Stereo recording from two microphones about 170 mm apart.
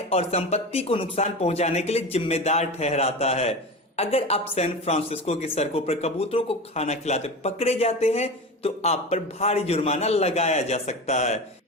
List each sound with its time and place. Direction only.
0.1 s a woman's voice: 35° left (ahead or behind)